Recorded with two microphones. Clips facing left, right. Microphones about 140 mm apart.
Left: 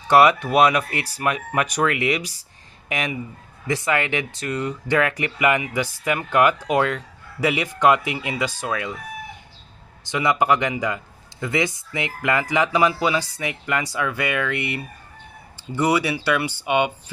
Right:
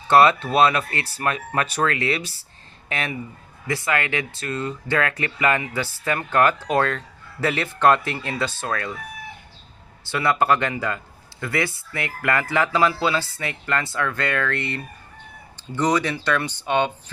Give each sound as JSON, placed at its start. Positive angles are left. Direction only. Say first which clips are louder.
{"t": 0.1, "sound": "speech", "louder": "left 1 dB", "side_deg": 15}
{"t": 10.0, "sound": "speech", "louder": "even", "side_deg": 15}